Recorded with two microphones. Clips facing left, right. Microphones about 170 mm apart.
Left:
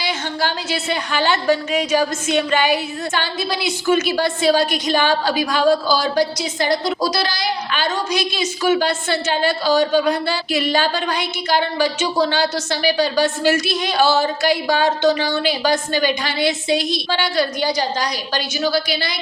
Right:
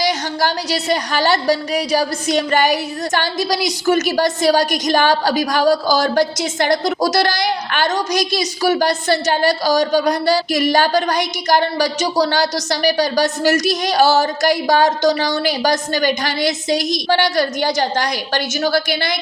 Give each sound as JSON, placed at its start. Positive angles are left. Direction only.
{"t": 0.0, "sound": "a woman's voice", "side_deg": -40}